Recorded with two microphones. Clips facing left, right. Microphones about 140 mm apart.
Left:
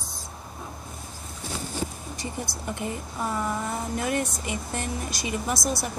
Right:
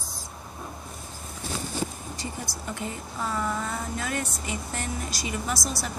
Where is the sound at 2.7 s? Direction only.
20° left (ahead or behind).